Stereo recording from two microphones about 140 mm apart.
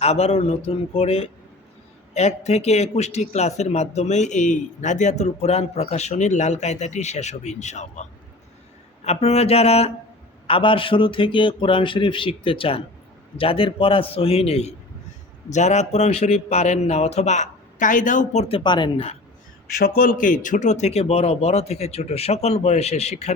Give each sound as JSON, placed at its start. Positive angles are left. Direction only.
{"t": 0.0, "sound": "a man's voice", "side_deg": 50}
{"t": 9.0, "sound": "a man's voice", "side_deg": 50}
{"t": 18.4, "sound": "a man's voice", "side_deg": 35}
{"t": 20.0, "sound": "a man's voice", "side_deg": 80}